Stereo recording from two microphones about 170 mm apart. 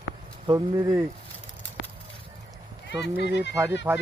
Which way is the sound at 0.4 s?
25° right (ahead or behind).